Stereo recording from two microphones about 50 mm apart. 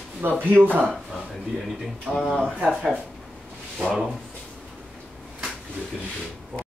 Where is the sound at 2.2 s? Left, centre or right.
Centre.